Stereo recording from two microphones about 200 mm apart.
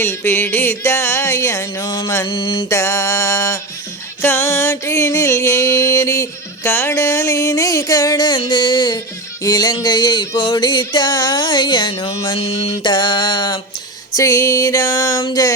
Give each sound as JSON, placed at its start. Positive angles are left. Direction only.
{"t": 0.0, "sound": "music", "side_deg": 10}
{"t": 2.7, "sound": "music", "side_deg": 15}
{"t": 12.4, "sound": "music", "side_deg": 30}